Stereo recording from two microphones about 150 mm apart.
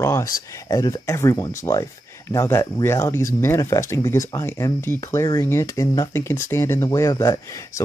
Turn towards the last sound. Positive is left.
turn(degrees=20)  # may be behind; listen again after turning